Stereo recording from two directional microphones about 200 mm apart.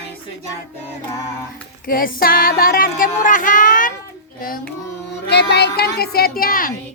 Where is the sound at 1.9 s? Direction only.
45° left (ahead or behind).